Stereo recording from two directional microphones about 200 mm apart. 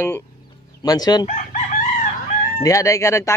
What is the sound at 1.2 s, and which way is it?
Chicken, 40° left (ahead or behind).